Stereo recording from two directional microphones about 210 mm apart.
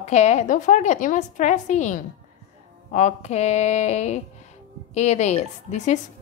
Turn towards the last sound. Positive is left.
turn(degrees=35)  # may be behind; listen again after turning